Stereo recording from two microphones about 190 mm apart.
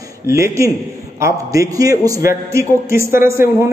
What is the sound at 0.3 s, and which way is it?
A man's voice, 15° right (ahead or behind).